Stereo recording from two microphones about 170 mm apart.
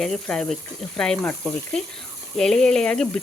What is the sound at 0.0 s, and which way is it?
Speech, 5° left (ahead or behind).